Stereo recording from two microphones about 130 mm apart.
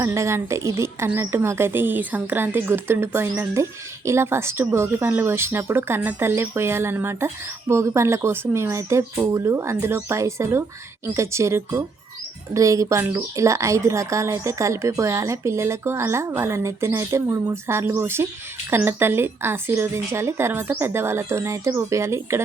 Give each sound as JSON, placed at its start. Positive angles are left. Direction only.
{"t": 0.0, "sound": "a woman's voice", "side_deg": -25}